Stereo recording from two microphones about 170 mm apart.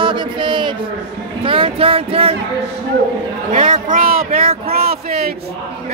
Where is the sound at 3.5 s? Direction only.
50° right (ahead or behind).